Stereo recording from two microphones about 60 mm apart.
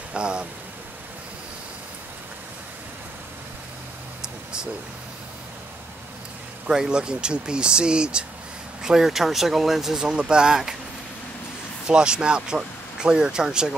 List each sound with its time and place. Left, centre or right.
0.1 s speech: centre
4.2 s a sound: centre
6.7 s speech: centre
11.9 s speech: centre